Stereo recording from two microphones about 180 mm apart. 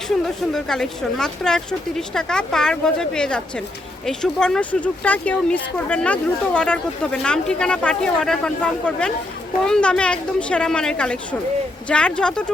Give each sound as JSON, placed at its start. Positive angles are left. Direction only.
{"t": 0.5, "sound": "speech", "side_deg": 5}